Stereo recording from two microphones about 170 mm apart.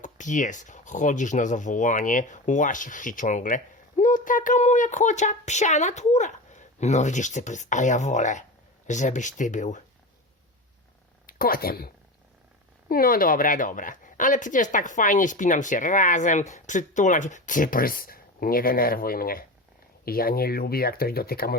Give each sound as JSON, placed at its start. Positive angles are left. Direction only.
{"t": 0.0, "sound": "speech", "side_deg": 45}
{"t": 11.3, "sound": "speech", "side_deg": 60}
{"t": 12.9, "sound": "speech", "side_deg": 60}